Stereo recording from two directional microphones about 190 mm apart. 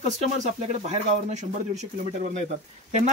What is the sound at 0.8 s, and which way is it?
Speech, 35° right (ahead or behind).